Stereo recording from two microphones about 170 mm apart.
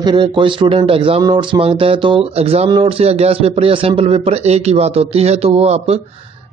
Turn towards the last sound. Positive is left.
turn(degrees=-40)  # may be behind; listen again after turning